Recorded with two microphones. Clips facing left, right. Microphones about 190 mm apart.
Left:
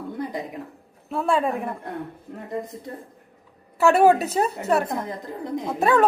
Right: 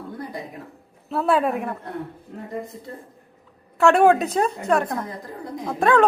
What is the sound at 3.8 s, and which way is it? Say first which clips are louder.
Speech: right 1 dB; 5° left (ahead or behind).